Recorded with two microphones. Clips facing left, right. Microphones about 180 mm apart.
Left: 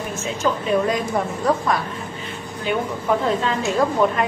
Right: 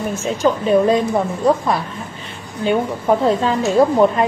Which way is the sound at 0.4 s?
30° right (ahead or behind).